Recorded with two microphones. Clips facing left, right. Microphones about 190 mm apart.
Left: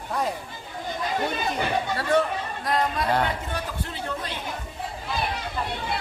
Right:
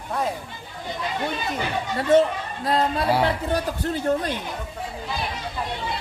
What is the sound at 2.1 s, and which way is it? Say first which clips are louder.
Speech: right 6 dB; 20° right (ahead or behind).